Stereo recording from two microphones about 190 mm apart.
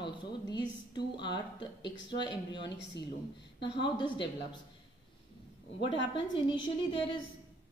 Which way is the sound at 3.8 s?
25° left (ahead or behind).